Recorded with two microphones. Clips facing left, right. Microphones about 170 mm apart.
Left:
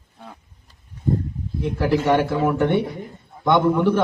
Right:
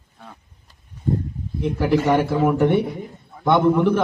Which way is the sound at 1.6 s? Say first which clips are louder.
Right 1 dB; centre (ahead or behind).